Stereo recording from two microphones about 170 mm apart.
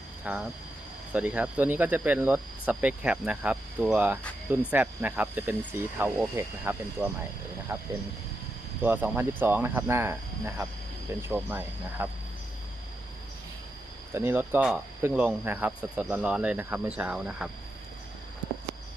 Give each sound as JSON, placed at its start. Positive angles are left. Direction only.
{"t": 0.3, "sound": "speech", "side_deg": -10}
{"t": 14.1, "sound": "speech", "side_deg": -15}